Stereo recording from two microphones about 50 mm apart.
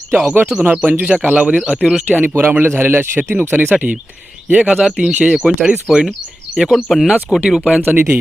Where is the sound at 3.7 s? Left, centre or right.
Right.